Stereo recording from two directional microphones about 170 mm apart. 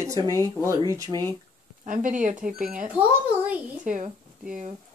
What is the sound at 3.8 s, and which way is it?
Speech, 50° right (ahead or behind).